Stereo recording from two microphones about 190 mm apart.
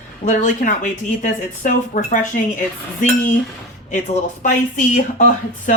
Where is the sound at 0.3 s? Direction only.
40° left (ahead or behind).